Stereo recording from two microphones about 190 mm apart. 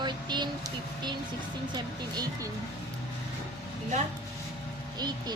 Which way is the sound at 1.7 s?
20° right (ahead or behind).